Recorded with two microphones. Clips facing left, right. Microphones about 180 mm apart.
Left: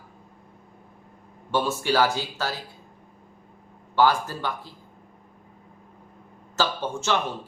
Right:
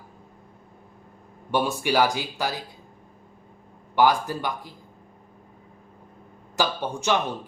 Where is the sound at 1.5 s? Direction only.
15° right (ahead or behind).